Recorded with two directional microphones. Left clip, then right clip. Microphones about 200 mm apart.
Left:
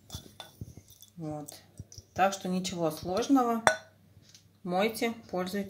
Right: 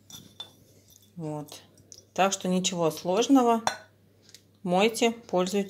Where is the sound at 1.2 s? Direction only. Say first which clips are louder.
Right 3 dB; 30° right (ahead or behind).